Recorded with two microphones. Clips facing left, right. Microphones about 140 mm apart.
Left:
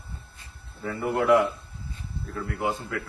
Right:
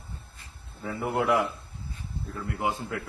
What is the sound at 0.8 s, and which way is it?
Speech, 10° right (ahead or behind).